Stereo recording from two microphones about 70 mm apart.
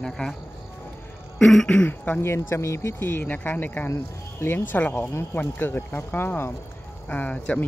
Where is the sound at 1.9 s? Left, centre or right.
Left.